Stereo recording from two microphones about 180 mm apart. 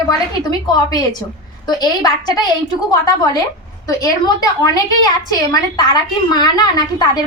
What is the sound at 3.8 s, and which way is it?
A woman's voice, 20° left (ahead or behind).